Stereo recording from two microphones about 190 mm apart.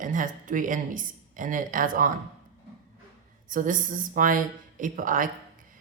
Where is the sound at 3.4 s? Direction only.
45° right (ahead or behind).